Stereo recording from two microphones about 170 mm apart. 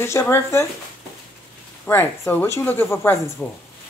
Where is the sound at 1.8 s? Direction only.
10° left (ahead or behind).